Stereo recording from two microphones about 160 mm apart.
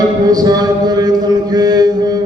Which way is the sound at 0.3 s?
25° right (ahead or behind).